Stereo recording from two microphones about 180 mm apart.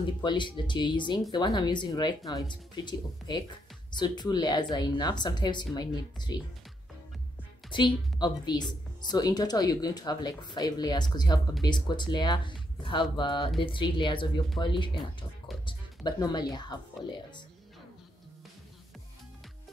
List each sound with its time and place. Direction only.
0.0 s speech: 25° left (ahead or behind)
7.7 s speech: 25° left (ahead or behind)